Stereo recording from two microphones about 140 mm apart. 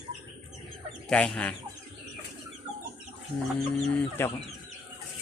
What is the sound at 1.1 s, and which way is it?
Chicken, 5° left (ahead or behind).